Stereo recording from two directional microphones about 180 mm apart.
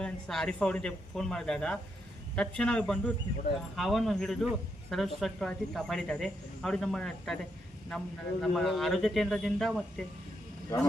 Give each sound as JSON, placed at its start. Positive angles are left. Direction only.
{"t": 0.0, "sound": "a man's voice", "side_deg": 5}